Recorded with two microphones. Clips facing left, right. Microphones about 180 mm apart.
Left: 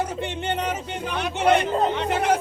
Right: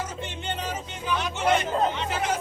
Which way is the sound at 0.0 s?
60° left (ahead or behind).